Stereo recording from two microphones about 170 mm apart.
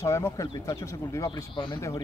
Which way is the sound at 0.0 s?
15° left (ahead or behind).